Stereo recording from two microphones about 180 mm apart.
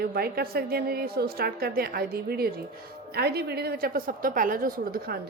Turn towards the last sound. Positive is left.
turn(degrees=-55)  # may be behind; listen again after turning